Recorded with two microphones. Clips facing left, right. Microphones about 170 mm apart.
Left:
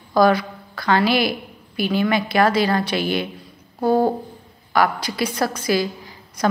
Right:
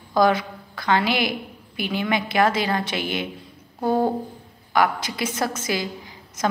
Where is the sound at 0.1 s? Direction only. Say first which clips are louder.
Left 3 dB; 20° right (ahead or behind).